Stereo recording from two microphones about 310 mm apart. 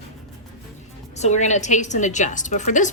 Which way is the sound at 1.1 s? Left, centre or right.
Left.